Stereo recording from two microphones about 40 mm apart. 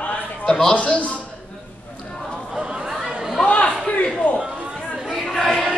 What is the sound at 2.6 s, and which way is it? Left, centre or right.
Chatter, right.